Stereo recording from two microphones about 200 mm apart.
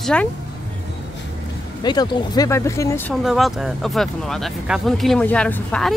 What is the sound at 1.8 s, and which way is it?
Speech, 20° left (ahead or behind).